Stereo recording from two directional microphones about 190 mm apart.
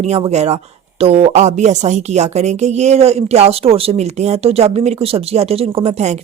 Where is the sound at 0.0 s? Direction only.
35° right (ahead or behind).